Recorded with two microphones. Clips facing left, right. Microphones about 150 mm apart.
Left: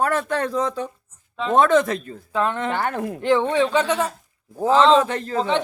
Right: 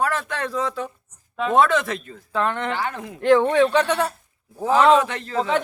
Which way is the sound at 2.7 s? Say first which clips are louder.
Left 4 dB; 55° left (ahead or behind).